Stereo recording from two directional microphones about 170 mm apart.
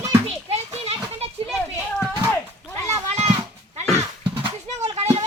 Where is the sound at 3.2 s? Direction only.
35° right (ahead or behind).